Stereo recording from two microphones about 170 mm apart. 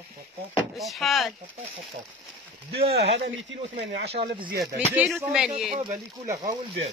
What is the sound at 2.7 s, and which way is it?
Speech, 70° right (ahead or behind).